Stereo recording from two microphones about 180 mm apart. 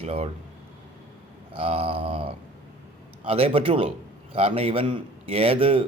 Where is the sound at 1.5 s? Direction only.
30° right (ahead or behind).